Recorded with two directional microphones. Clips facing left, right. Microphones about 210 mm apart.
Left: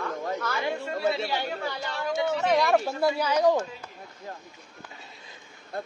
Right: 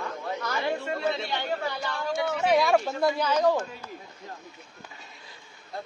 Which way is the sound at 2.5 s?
Centre (ahead or behind).